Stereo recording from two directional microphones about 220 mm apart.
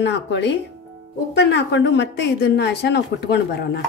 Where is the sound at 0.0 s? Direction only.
50° left (ahead or behind).